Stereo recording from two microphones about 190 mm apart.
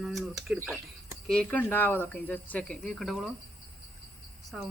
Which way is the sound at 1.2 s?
5° left (ahead or behind).